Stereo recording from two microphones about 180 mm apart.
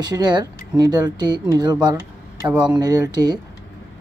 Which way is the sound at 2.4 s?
5° right (ahead or behind).